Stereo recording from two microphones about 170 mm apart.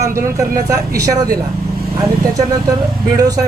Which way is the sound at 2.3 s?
20° right (ahead or behind).